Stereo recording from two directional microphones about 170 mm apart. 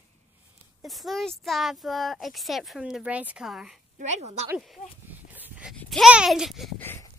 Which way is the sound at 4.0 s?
45° right (ahead or behind).